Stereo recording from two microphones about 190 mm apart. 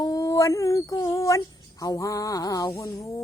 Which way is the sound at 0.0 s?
20° left (ahead or behind).